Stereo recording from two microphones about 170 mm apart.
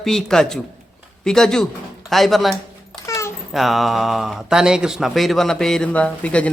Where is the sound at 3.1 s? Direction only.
15° left (ahead or behind).